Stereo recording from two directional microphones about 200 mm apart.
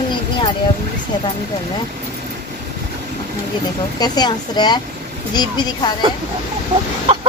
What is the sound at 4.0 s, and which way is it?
Speech, 20° left (ahead or behind).